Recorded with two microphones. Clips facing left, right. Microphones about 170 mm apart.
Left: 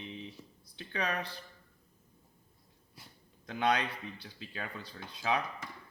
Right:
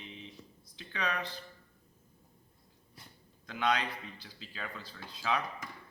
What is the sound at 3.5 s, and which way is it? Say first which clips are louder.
Speech: left 1 dB; 30° left (ahead or behind).